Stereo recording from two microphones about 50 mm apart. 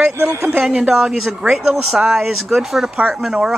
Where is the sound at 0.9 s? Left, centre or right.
Centre.